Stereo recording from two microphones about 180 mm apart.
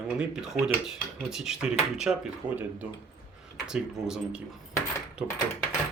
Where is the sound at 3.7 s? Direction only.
5° right (ahead or behind).